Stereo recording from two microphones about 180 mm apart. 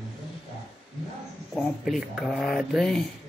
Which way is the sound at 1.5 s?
Centre (ahead or behind).